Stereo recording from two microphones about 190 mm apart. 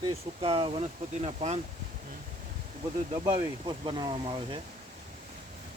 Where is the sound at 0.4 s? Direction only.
30° right (ahead or behind).